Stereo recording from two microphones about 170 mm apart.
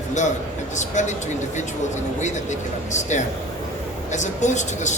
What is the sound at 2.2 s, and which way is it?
A man's voice, 45° left (ahead or behind).